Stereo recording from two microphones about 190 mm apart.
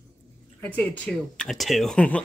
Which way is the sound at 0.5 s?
10° left (ahead or behind).